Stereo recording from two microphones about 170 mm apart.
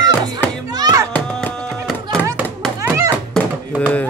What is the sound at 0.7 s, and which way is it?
Music, 20° right (ahead or behind).